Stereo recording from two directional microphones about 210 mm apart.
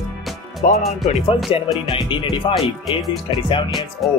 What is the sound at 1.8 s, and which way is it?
Music, 25° left (ahead or behind).